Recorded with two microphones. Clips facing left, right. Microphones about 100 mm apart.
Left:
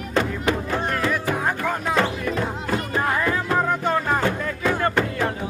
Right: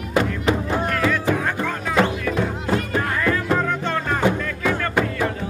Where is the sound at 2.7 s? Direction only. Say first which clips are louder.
Left 1 dB; 15° left (ahead or behind).